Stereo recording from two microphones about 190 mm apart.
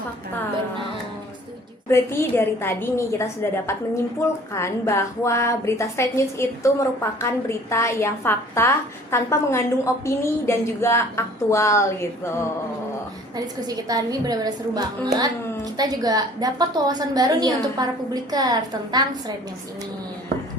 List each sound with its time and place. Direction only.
1.9 s a woman's voice: 15° left (ahead or behind)
13.3 s a woman's voice: 20° right (ahead or behind)